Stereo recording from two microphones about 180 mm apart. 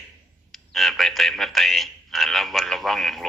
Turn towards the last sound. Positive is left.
turn(degrees=0)  # may be behind; listen again after turning